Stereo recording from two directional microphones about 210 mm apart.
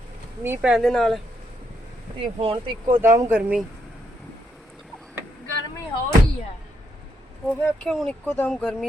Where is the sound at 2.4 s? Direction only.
25° right (ahead or behind).